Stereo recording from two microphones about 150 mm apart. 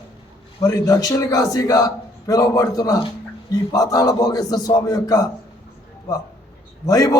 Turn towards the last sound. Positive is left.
turn(degrees=20)  # may be behind; listen again after turning